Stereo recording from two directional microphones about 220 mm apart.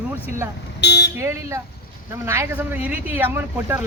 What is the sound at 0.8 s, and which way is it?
Guitar, 50° left (ahead or behind).